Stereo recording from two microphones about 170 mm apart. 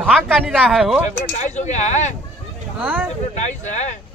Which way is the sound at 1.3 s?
45° left (ahead or behind).